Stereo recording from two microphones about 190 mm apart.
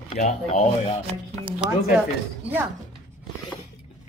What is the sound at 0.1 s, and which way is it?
Speech, 35° left (ahead or behind).